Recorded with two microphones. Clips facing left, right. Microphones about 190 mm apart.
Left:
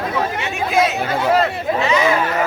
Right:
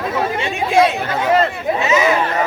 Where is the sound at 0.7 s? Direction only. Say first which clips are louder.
Right 4 dB; 30° right (ahead or behind).